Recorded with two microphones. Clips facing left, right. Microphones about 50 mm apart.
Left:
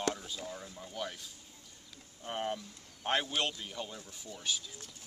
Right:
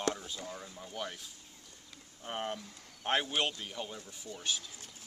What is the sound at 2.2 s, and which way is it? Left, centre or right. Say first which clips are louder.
Speech: left 1 dB; centre.